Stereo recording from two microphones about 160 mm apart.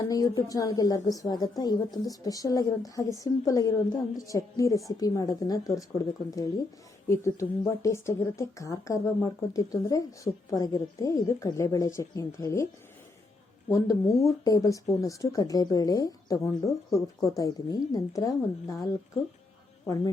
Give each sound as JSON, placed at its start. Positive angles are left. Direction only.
{"t": 0.0, "sound": "speech", "side_deg": 25}
{"t": 13.7, "sound": "speech", "side_deg": 20}